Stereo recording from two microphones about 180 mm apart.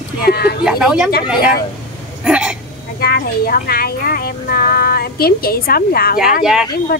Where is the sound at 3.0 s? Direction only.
60° left (ahead or behind).